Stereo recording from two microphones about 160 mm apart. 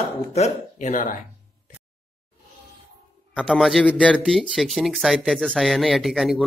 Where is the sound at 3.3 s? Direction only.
5° left (ahead or behind).